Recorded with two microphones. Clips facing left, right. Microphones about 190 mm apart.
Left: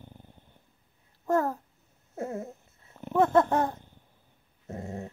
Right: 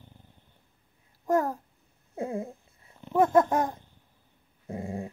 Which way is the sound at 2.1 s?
15° right (ahead or behind).